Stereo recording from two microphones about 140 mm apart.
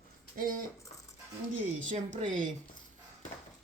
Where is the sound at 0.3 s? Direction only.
90° right.